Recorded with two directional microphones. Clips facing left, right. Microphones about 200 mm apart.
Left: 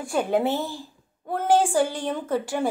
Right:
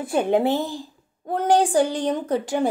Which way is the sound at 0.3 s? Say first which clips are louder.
Right 4 dB; 15° right (ahead or behind).